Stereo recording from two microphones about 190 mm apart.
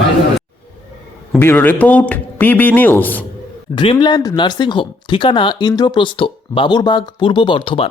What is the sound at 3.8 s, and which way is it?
Speech, 25° left (ahead or behind).